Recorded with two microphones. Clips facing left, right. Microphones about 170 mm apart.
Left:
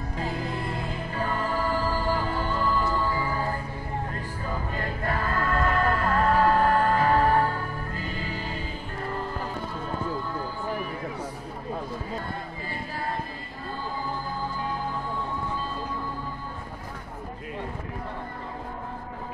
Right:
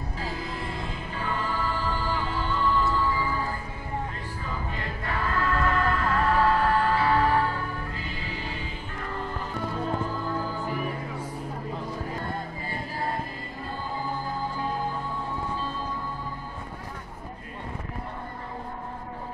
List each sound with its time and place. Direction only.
1.1 s music: 40° left (ahead or behind)
4.7 s music: 40° left (ahead or behind)